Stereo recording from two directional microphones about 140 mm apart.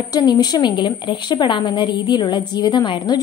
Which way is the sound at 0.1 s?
30° left (ahead or behind).